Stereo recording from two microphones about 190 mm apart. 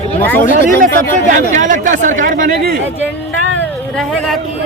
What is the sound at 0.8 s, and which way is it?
Speech, 45° right (ahead or behind).